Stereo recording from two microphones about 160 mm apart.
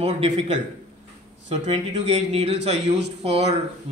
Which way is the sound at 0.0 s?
40° right (ahead or behind).